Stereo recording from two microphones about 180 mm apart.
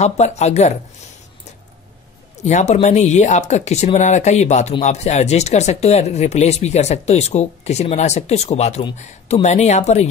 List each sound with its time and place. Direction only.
0.0 s speech: 40° left (ahead or behind)
2.3 s speech: 40° left (ahead or behind)